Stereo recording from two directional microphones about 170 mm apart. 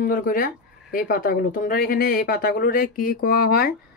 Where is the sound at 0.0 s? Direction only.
55° left (ahead or behind).